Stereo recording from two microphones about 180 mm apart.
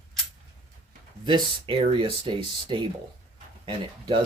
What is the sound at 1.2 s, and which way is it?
Speech, 25° right (ahead or behind).